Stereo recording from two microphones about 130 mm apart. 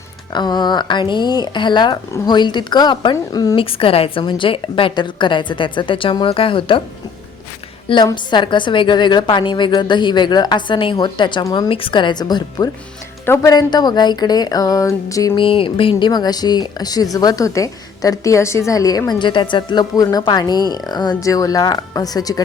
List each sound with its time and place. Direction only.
0.3 s speech: 35° left (ahead or behind)
3.6 s speech: 45° left (ahead or behind)
7.9 s speech: 35° left (ahead or behind)
13.2 s speech: 20° left (ahead or behind)
13.5 s speech: 30° left (ahead or behind)
15.4 s speech: 40° left (ahead or behind)